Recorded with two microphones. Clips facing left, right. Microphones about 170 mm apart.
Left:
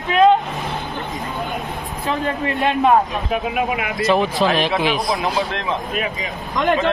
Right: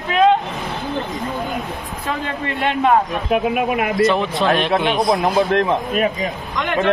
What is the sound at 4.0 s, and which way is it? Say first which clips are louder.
A man's voice: left 2 dB; centre (ahead or behind).